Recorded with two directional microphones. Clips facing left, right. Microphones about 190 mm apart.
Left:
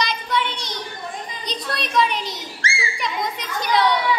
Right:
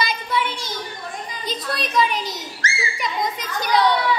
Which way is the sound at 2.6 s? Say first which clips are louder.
Even; 30° left (ahead or behind).